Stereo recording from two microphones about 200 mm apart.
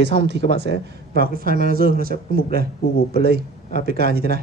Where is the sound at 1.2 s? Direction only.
45° right (ahead or behind).